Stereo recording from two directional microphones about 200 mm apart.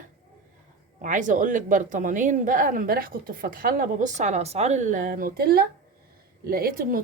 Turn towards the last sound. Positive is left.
turn(degrees=-45)  # may be behind; listen again after turning